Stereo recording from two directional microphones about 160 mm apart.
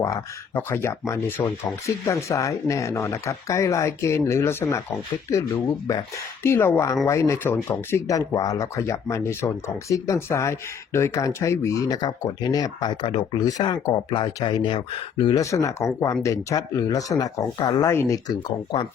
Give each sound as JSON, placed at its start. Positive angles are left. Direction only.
{"t": 0.0, "sound": "speech", "side_deg": 15}
{"t": 15.4, "sound": "speech", "side_deg": 20}